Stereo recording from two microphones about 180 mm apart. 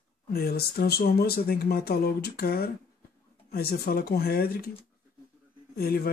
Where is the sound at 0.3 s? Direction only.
60° left (ahead or behind).